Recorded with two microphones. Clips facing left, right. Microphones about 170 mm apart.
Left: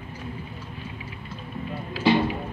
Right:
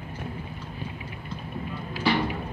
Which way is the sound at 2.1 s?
20° left (ahead or behind).